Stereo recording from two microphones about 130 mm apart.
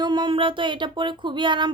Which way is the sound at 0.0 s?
35° right (ahead or behind).